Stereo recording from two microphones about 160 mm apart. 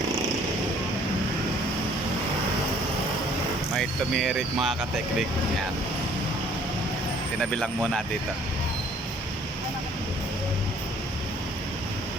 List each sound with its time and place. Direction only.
3.8 s speech: centre (ahead or behind)
7.5 s speech: centre (ahead or behind)